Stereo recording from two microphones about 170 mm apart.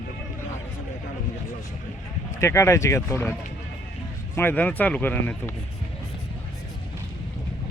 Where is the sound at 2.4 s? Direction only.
15° left (ahead or behind).